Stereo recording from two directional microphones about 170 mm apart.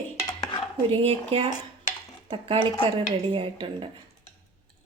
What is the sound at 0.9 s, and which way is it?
Speech, 35° right (ahead or behind).